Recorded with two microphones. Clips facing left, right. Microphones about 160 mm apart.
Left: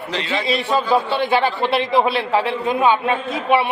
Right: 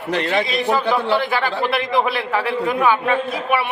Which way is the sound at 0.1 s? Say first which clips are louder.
Right 5 dB; 55° right (ahead or behind).